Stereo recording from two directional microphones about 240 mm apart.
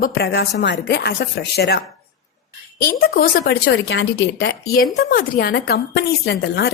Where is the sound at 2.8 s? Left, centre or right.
Left.